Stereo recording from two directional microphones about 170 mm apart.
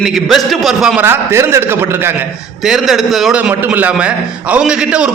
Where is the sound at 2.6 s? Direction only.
Centre (ahead or behind).